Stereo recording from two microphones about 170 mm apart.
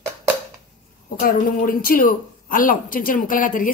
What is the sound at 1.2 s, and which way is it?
A woman's voice, 60° left (ahead or behind).